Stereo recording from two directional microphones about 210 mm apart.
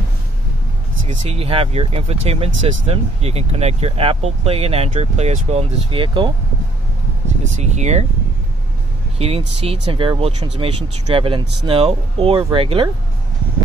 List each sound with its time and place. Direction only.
1.0 s speech: 30° right (ahead or behind)
7.4 s speech: 35° right (ahead or behind)
9.2 s speech: 30° right (ahead or behind)